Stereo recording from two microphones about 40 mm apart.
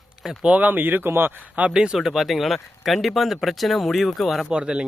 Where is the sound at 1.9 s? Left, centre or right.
Centre.